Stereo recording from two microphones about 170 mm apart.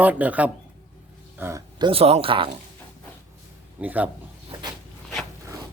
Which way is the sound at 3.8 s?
10° right (ahead or behind).